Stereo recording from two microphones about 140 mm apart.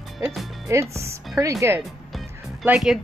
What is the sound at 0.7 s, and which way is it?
Speech, 20° right (ahead or behind).